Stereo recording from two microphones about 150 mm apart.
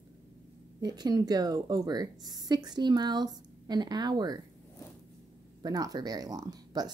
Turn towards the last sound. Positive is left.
turn(degrees=-25)  # may be behind; listen again after turning